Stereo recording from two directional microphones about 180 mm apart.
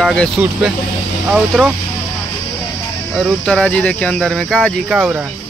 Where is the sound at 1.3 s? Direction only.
5° right (ahead or behind).